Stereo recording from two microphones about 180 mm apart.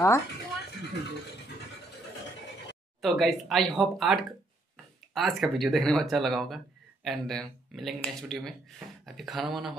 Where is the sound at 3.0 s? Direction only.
Centre (ahead or behind).